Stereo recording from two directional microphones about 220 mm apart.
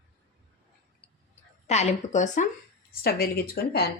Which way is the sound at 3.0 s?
45° left (ahead or behind).